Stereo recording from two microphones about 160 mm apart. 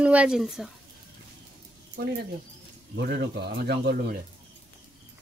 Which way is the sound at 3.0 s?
90° right.